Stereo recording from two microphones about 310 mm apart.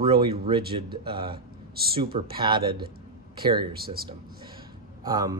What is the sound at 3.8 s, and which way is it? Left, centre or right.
Speech, right.